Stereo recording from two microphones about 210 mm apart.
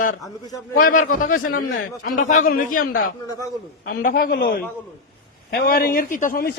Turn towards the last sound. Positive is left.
turn(degrees=45)  # may be behind; listen again after turning